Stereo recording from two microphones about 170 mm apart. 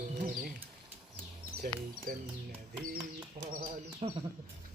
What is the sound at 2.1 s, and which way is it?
Speech, 55° right (ahead or behind).